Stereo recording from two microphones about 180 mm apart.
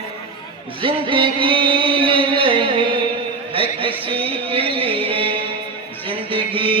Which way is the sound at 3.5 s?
30° right (ahead or behind).